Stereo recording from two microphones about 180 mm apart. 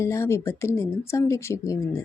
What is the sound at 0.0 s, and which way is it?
A woman's voice, 15° left (ahead or behind).